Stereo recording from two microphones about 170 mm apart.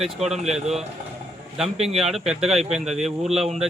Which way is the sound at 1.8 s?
Centre (ahead or behind).